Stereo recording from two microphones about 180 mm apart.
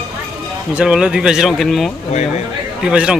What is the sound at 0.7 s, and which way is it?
Speech, 5° right (ahead or behind).